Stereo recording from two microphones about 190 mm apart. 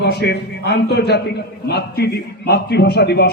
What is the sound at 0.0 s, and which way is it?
A man's voice, 60° left (ahead or behind).